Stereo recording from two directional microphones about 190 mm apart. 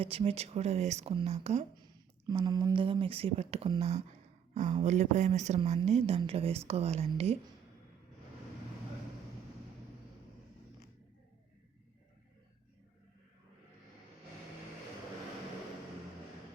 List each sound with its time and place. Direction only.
0.0 s speech: 30° right (ahead or behind)
2.2 s speech: 20° right (ahead or behind)